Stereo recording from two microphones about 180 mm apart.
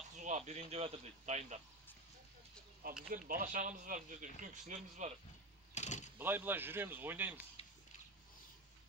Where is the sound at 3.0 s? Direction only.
50° right (ahead or behind).